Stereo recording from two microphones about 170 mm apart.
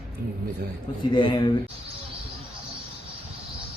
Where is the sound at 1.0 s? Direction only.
30° left (ahead or behind).